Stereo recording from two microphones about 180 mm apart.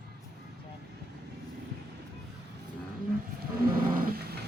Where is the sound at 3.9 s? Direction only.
60° right (ahead or behind).